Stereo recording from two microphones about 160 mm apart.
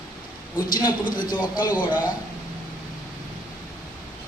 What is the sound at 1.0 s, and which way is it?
Speech, 60° left (ahead or behind).